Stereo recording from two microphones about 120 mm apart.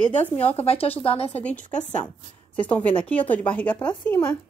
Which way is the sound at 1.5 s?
85° left.